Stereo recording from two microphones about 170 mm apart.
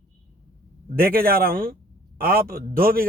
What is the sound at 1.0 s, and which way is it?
Speech, 60° right (ahead or behind).